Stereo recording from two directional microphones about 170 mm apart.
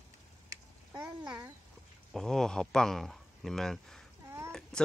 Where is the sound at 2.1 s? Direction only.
5° left (ahead or behind).